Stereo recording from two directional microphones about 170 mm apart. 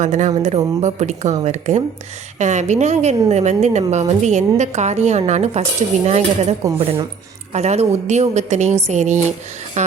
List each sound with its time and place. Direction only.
0.0 s a woman's voice: 45° right (ahead or behind)
7.5 s a woman's voice: 40° right (ahead or behind)